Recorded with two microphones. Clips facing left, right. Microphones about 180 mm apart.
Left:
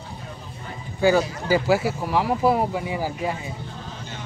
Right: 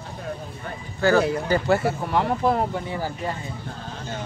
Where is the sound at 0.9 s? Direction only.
15° left (ahead or behind).